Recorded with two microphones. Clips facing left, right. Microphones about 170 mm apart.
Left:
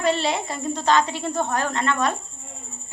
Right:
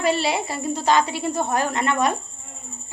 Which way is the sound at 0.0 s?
5° right (ahead or behind).